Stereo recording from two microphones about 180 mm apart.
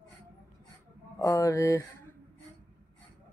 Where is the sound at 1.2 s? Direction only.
15° left (ahead or behind).